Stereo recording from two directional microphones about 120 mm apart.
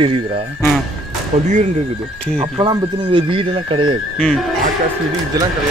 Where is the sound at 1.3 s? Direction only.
75° right (ahead or behind).